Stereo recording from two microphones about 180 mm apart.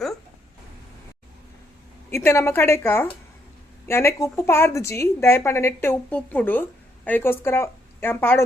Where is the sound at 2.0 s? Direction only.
15° left (ahead or behind).